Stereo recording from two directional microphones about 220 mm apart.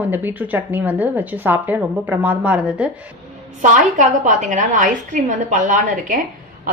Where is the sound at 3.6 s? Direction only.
35° right (ahead or behind).